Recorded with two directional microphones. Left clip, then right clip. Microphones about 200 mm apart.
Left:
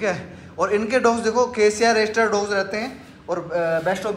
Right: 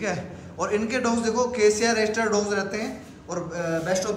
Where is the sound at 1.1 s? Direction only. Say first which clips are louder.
Left 4 dB; 30° right (ahead or behind).